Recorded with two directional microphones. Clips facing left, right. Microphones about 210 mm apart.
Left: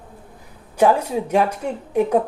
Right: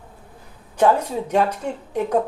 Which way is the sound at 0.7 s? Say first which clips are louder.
Left 1 dB; 10° left (ahead or behind).